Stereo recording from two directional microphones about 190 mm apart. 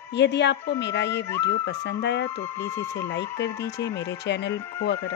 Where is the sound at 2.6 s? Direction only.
15° left (ahead or behind).